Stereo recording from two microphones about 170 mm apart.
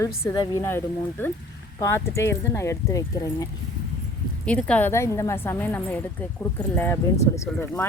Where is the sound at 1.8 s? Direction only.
15° left (ahead or behind).